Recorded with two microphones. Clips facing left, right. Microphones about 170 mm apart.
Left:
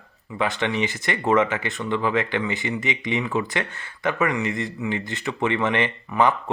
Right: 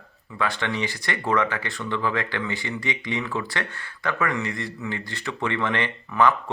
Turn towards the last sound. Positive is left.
turn(degrees=20)  # may be behind; listen again after turning